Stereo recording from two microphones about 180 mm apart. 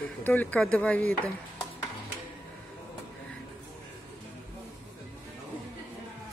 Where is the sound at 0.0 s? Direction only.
10° left (ahead or behind).